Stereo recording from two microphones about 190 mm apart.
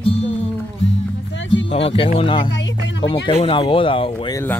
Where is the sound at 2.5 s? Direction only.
75° left (ahead or behind).